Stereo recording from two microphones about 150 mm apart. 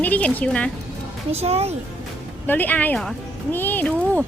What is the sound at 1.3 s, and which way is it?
Speech, 40° right (ahead or behind).